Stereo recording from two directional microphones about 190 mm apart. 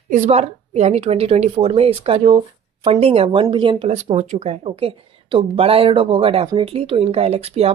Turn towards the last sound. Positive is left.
turn(degrees=-30)  # may be behind; listen again after turning